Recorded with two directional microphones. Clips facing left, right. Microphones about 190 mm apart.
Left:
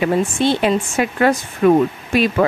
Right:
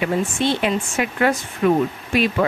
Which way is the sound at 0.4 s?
35° left (ahead or behind).